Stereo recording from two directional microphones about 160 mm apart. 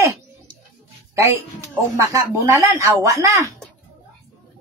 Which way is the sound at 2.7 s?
20° right (ahead or behind).